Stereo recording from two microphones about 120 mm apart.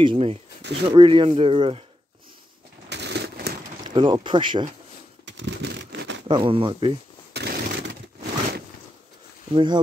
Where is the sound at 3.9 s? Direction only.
40° right (ahead or behind).